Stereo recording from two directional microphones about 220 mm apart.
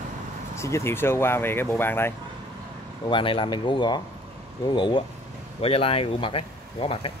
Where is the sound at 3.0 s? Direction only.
25° left (ahead or behind).